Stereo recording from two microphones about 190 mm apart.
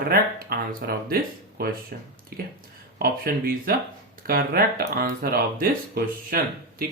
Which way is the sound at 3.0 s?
50° right (ahead or behind).